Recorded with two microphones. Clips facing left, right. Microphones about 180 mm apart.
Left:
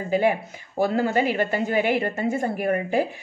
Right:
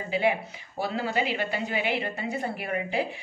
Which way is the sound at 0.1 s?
45° left (ahead or behind).